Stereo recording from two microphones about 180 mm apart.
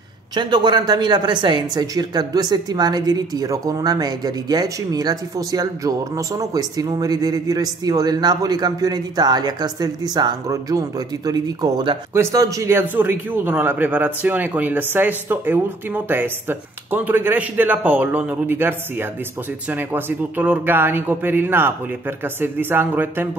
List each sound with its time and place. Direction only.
0.3 s a woman's voice: 25° right (ahead or behind)